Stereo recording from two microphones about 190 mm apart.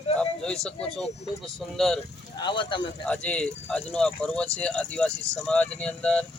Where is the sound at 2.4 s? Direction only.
25° left (ahead or behind).